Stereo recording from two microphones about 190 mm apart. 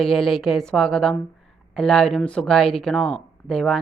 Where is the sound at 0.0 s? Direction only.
Centre (ahead or behind).